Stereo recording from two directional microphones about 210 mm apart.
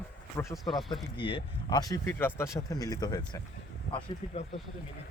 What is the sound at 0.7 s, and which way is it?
Speech, centre (ahead or behind).